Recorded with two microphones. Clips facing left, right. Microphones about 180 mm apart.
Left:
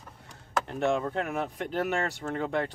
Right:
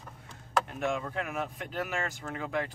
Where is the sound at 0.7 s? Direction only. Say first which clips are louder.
Left 5 dB; 30° left (ahead or behind).